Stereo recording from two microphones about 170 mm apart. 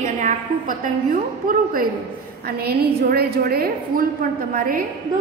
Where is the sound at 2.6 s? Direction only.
65° right (ahead or behind).